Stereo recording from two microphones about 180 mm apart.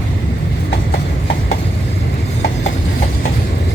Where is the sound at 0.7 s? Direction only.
70° left (ahead or behind).